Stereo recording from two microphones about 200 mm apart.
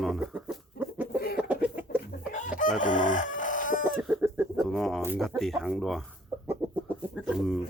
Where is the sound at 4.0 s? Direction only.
5° right (ahead or behind).